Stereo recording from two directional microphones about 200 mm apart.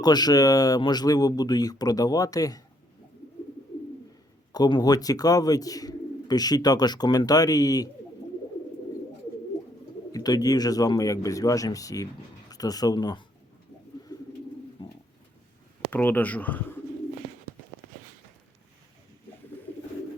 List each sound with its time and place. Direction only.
0.0 s speech: 20° left (ahead or behind)
4.5 s speech: 20° left (ahead or behind)
10.1 s speech: 20° left (ahead or behind)
14.8 s bird: 25° left (ahead or behind)
15.9 s speech: 10° left (ahead or behind)